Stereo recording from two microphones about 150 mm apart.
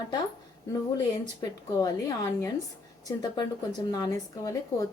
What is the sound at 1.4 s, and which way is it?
A woman's voice, 25° left (ahead or behind).